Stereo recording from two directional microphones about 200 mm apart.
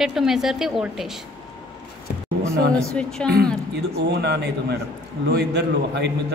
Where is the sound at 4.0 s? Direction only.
55° right (ahead or behind).